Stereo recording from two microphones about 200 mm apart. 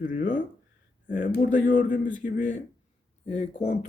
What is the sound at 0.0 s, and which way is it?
Speech, 40° left (ahead or behind).